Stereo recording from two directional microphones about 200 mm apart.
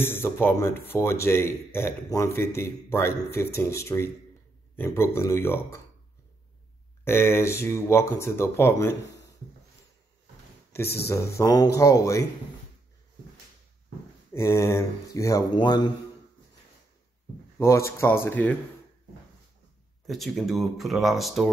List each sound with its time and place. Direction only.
0.0 s speech: 10° left (ahead or behind)
7.1 s speech: 10° left (ahead or behind)
11.1 s speech: 15° left (ahead or behind)
14.3 s speech: 15° left (ahead or behind)
17.6 s speech: 15° left (ahead or behind)
20.1 s speech: centre (ahead or behind)